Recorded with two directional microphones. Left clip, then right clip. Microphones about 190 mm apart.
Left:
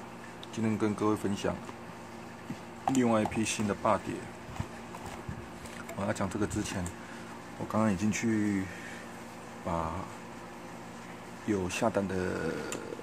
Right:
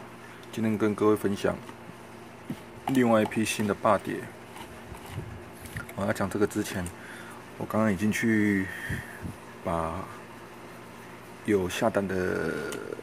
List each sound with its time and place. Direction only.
0.6 s speech: 15° right (ahead or behind)
2.9 s speech: 20° right (ahead or behind)
5.9 s speech: 20° right (ahead or behind)
9.7 s speech: 20° right (ahead or behind)
11.4 s speech: 20° right (ahead or behind)